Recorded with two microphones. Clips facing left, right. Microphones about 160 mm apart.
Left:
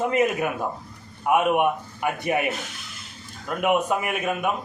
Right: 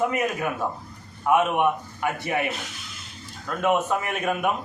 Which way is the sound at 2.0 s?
15° left (ahead or behind).